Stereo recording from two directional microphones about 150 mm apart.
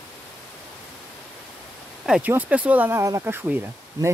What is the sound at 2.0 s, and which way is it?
Speech, 10° right (ahead or behind).